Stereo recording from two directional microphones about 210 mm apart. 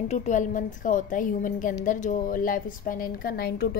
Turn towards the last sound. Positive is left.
turn(degrees=45)  # may be behind; listen again after turning